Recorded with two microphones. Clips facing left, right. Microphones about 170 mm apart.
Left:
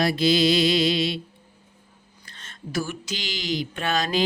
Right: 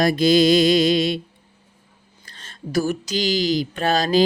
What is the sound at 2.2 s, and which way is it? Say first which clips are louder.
Speech: right 4 dB; 35° right (ahead or behind).